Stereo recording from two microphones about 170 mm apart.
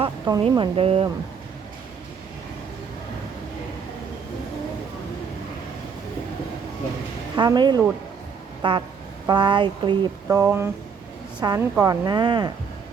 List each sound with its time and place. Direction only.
0.0 s chicken: 25° right (ahead or behind)
0.4 s speech: 30° right (ahead or behind)
7.3 s a woman's voice: 25° right (ahead or behind)
10.2 s a woman's voice: 15° right (ahead or behind)